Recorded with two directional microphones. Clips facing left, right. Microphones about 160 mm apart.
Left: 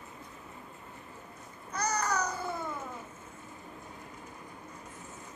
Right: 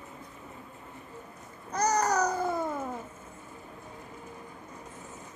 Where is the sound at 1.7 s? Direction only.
40° right (ahead or behind).